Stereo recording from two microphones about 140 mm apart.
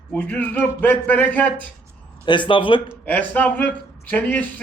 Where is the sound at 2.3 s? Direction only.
35° left (ahead or behind).